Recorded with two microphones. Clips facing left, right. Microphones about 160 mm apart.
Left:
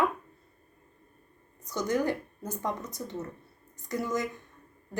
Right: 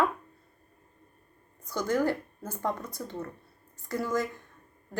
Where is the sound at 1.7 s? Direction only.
20° left (ahead or behind).